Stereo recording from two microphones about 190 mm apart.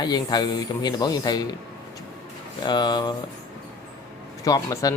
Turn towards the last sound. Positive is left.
turn(degrees=20)  # may be behind; listen again after turning